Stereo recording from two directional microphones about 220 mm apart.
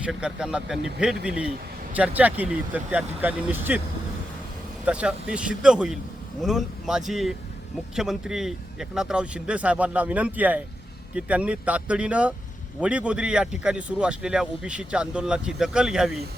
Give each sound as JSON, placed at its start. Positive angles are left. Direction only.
{"t": 0.0, "sound": "speech", "side_deg": -5}
{"t": 4.9, "sound": "speech", "side_deg": -5}